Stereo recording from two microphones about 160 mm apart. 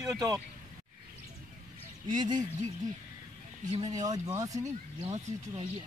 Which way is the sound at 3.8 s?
25° right (ahead or behind).